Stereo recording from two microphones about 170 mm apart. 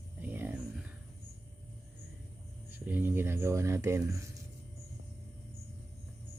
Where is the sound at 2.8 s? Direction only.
10° right (ahead or behind).